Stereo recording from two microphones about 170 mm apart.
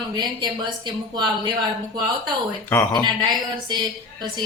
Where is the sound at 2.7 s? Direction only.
10° left (ahead or behind).